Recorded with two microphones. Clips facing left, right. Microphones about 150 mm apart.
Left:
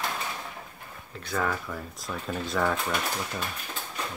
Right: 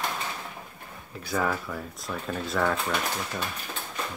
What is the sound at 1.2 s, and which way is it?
Speech, 5° right (ahead or behind).